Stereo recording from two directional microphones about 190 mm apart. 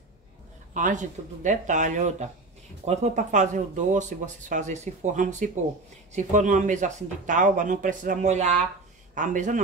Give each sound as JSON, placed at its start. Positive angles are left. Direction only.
{"t": 0.7, "sound": "a man's voice", "side_deg": -40}